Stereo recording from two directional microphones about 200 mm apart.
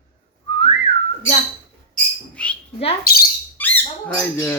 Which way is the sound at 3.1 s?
50° left (ahead or behind).